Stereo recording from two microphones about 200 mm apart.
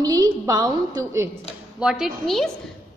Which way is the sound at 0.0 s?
15° right (ahead or behind).